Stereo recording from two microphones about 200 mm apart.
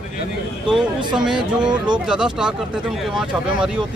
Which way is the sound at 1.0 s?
20° right (ahead or behind).